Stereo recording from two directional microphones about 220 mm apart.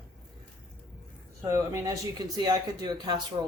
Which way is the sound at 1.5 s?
15° right (ahead or behind).